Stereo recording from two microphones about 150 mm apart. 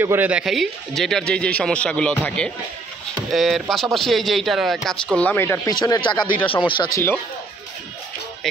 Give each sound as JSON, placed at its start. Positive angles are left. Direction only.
{"t": 0.0, "sound": "a man's voice", "side_deg": -15}
{"t": 5.8, "sound": "speech", "side_deg": 30}